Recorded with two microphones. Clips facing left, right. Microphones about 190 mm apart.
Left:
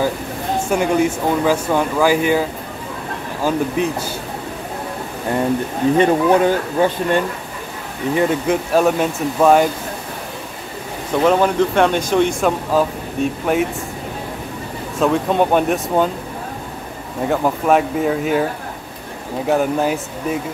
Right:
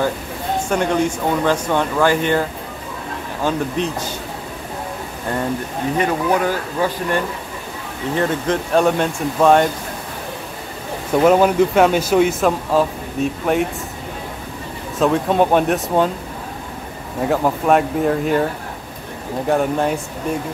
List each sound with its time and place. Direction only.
0.7 s speech: 5° left (ahead or behind)
3.4 s speech: 10° left (ahead or behind)
5.9 s speech: 25° left (ahead or behind)
8.2 s speech: 5° left (ahead or behind)
11.2 s speech: 5° right (ahead or behind)
15.0 s speech: centre (ahead or behind)
17.2 s speech: centre (ahead or behind)